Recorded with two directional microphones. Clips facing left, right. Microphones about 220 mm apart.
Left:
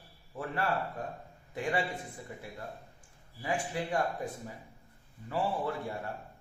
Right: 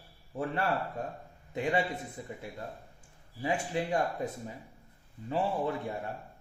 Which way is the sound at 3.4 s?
25° right (ahead or behind).